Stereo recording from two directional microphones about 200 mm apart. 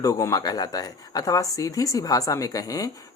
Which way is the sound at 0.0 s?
15° left (ahead or behind).